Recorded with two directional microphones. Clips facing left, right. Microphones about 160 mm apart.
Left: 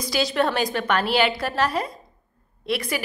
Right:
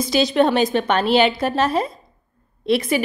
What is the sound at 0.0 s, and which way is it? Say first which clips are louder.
A woman's voice: right 6 dB; 20° right (ahead or behind).